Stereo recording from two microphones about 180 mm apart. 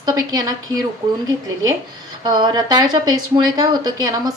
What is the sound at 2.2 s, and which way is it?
A woman's voice, 25° right (ahead or behind).